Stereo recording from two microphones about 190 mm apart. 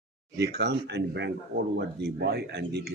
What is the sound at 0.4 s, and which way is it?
Speech, 60° right (ahead or behind).